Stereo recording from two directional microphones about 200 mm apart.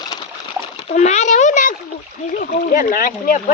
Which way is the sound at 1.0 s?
35° left (ahead or behind).